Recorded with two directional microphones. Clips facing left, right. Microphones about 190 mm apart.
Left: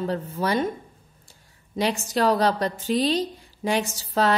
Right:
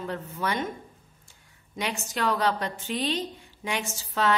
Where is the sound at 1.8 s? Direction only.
35° left (ahead or behind).